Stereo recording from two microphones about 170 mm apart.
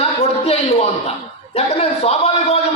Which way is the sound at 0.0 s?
40° left (ahead or behind).